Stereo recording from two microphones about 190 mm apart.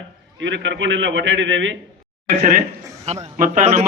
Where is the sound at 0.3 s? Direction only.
75° right (ahead or behind).